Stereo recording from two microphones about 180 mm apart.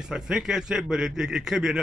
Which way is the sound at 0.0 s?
5° right (ahead or behind).